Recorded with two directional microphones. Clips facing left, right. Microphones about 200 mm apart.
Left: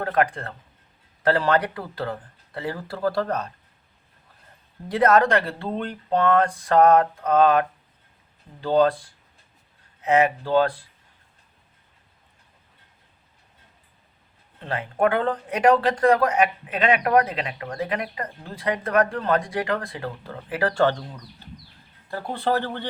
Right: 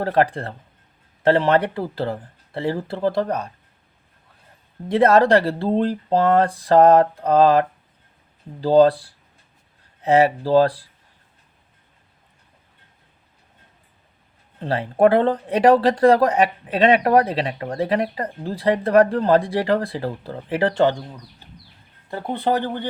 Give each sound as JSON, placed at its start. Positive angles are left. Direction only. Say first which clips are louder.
{"t": 0.0, "sound": "speech", "louder": "right 4 dB", "side_deg": -30}
{"t": 4.9, "sound": "speech", "louder": "right 4 dB", "side_deg": -30}
{"t": 14.6, "sound": "speech", "louder": "right 6 dB", "side_deg": -35}
{"t": 22.1, "sound": "speech", "louder": "right 3 dB", "side_deg": -20}